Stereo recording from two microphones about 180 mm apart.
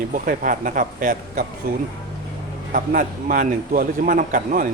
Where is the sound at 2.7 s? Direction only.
50° right (ahead or behind).